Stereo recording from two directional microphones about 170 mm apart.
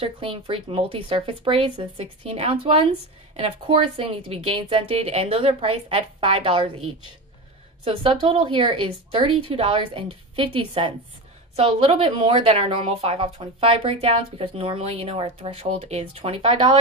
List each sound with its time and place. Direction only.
0.0 s speech: 30° right (ahead or behind)
7.8 s speech: 30° right (ahead or behind)